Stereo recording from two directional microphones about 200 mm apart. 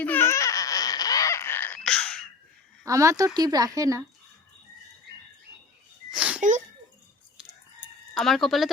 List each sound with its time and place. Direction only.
0.0 s baby cry: 10° left (ahead or behind)
2.8 s speech: 15° right (ahead or behind)
6.1 s a sound: 5° right (ahead or behind)
7.3 s chicken: centre (ahead or behind)